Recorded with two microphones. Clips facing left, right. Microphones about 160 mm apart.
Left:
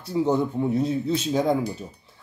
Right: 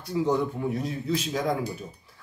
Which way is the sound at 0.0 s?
30° left (ahead or behind).